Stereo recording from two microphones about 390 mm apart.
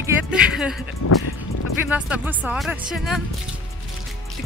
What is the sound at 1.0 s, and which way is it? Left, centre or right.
Speech, left.